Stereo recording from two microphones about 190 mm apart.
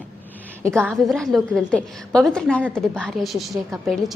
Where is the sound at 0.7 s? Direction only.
5° left (ahead or behind).